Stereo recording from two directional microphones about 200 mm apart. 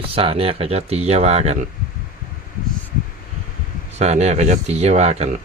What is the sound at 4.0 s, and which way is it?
Speech, 35° right (ahead or behind).